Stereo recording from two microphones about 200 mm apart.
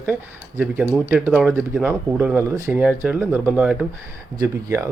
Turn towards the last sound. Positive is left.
turn(degrees=-15)  # may be behind; listen again after turning